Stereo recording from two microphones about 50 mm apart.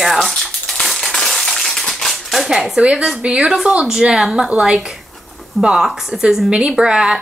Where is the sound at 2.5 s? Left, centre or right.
Centre.